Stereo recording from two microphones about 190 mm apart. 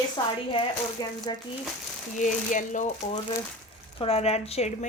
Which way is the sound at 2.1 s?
40° left (ahead or behind).